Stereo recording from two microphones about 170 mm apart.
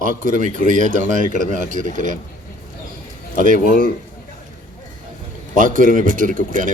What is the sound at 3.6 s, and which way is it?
Speech, 60° left (ahead or behind).